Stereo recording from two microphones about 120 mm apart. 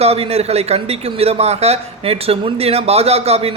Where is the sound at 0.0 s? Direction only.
60° right (ahead or behind).